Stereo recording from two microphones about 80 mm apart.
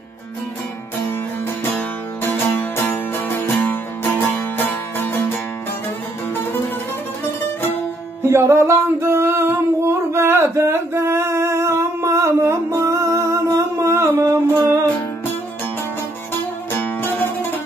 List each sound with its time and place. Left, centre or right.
1.6 s music: left
8.2 s music: right
16.3 s music: left